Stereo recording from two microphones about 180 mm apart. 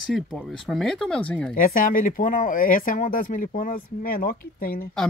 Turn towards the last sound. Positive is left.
turn(degrees=55)  # may be behind; listen again after turning